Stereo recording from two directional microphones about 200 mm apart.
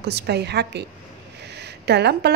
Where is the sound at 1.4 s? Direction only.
55° right (ahead or behind).